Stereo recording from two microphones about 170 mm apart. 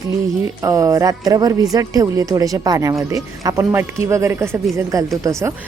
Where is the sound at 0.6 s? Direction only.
20° right (ahead or behind).